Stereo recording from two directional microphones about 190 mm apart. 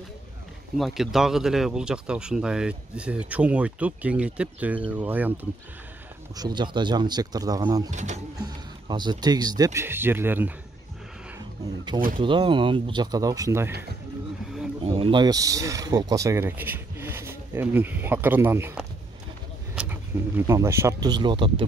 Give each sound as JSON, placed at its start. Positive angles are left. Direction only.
{"t": 0.7, "sound": "speech", "side_deg": 0}
{"t": 6.3, "sound": "speech", "side_deg": -20}
{"t": 7.9, "sound": "speech", "side_deg": -40}
{"t": 8.4, "sound": "speech", "side_deg": -20}
{"t": 11.3, "sound": "a sound", "side_deg": -25}
{"t": 12.2, "sound": "speech", "side_deg": -25}
{"t": 14.8, "sound": "speech", "side_deg": -30}